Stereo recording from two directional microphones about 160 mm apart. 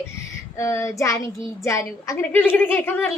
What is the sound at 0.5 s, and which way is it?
A woman's voice, 15° left (ahead or behind).